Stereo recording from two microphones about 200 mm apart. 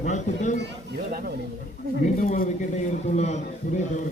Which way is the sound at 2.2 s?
40° left (ahead or behind).